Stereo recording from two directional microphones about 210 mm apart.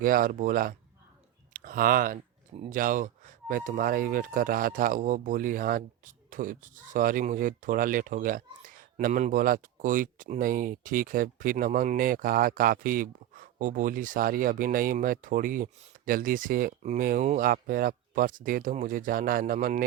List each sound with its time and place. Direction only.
0.0 s speech: 40° right (ahead or behind)